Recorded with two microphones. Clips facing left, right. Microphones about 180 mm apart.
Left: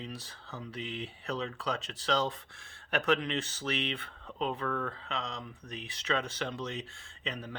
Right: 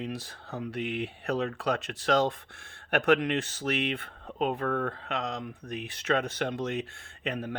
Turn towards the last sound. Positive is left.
turn(degrees=-55)  # may be behind; listen again after turning